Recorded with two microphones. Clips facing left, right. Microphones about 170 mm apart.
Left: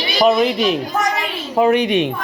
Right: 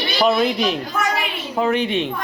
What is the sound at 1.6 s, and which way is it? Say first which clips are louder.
Speech: left 5 dB; 15° left (ahead or behind).